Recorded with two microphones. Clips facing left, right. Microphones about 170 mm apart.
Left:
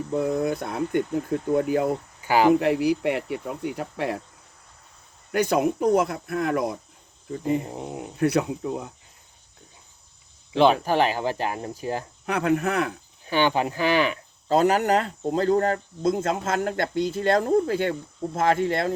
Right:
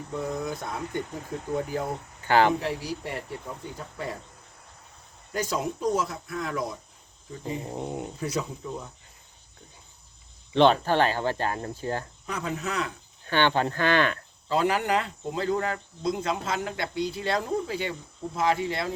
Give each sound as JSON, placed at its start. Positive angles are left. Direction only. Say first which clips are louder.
{"t": 0.1, "sound": "speech", "louder": "left 7 dB", "side_deg": 60}
{"t": 2.2, "sound": "speech", "louder": "left 3 dB", "side_deg": 10}
{"t": 2.6, "sound": "speech", "louder": "left 10 dB", "side_deg": 65}
{"t": 5.3, "sound": "speech", "louder": "left 7 dB", "side_deg": 65}
{"t": 7.6, "sound": "a sound", "louder": "right 1 dB", "side_deg": 0}
{"t": 8.2, "sound": "speech", "louder": "left 12 dB", "side_deg": 65}
{"t": 10.5, "sound": "speech", "louder": "left 1 dB", "side_deg": 5}
{"t": 12.2, "sound": "speech", "louder": "left 9 dB", "side_deg": 70}
{"t": 13.2, "sound": "speech", "louder": "left 2 dB", "side_deg": 10}
{"t": 14.4, "sound": "speech", "louder": "left 5 dB", "side_deg": 45}